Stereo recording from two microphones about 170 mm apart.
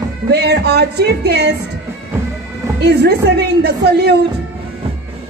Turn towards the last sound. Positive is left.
turn(degrees=-75)  # may be behind; listen again after turning